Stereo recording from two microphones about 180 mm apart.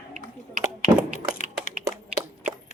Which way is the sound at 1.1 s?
40° left (ahead or behind).